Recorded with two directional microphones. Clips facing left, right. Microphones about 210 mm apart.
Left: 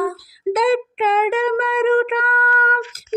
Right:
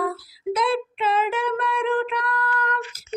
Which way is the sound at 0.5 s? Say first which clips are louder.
Left 6 dB; 55° left (ahead or behind).